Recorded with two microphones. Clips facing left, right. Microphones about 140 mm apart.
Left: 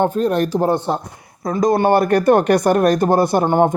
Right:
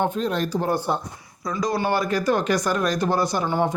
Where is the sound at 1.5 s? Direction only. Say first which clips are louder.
Left 8 dB; 50° left (ahead or behind).